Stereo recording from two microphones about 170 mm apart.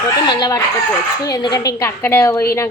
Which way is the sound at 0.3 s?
25° left (ahead or behind).